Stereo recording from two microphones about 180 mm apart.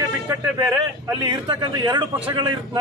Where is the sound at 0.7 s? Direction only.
20° right (ahead or behind).